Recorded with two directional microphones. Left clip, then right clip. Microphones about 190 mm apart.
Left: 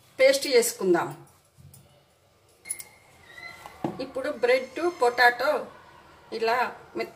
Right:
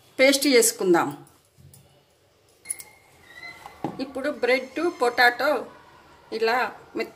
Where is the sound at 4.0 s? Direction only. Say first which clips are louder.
Right 1 dB; 50° right (ahead or behind).